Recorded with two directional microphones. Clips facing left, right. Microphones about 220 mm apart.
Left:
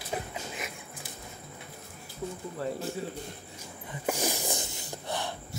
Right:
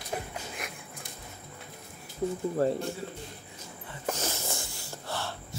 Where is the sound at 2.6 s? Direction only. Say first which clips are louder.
Right 7 dB; 40° right (ahead or behind).